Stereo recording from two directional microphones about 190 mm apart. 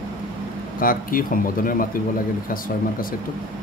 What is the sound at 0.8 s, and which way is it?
Speech, 50° left (ahead or behind).